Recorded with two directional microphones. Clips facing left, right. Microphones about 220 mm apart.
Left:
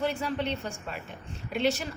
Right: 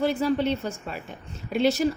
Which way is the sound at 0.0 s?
40° right (ahead or behind).